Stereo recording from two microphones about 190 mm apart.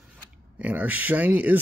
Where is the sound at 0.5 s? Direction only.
10° right (ahead or behind).